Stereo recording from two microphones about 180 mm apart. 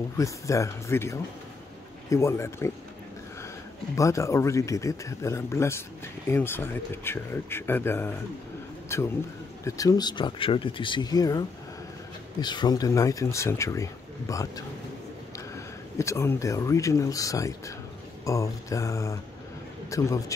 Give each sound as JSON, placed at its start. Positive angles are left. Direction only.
{"t": 0.2, "sound": "speech", "side_deg": 15}
{"t": 3.9, "sound": "a man's voice", "side_deg": 15}